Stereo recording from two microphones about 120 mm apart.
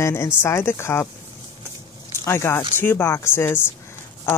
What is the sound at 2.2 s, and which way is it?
A woman's voice, 20° left (ahead or behind).